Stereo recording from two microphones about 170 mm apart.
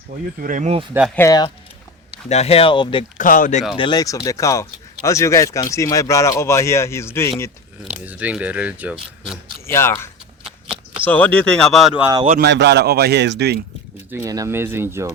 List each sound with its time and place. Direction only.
0.3 s speech: 50° right (ahead or behind)
1.1 s speech: 20° left (ahead or behind)
2.3 s speech: 35° left (ahead or behind)
3.2 s speech: 55° left (ahead or behind)
3.8 s speech: 25° left (ahead or behind)
7.9 s speech: 10° right (ahead or behind)
9.6 s speech: 15° left (ahead or behind); by 12.0 s centre (ahead or behind)
12.4 s speech: 90° right
14.1 s speech: 15° right (ahead or behind)